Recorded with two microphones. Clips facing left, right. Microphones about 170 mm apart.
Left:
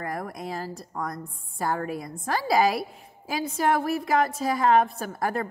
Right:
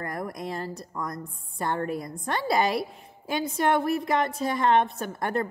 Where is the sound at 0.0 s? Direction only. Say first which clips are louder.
Even; centre (ahead or behind).